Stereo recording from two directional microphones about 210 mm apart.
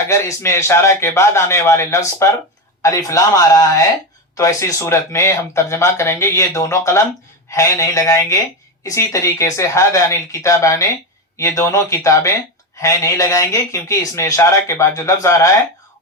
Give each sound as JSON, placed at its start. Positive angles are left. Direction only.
{"t": 0.1, "sound": "speech", "side_deg": 15}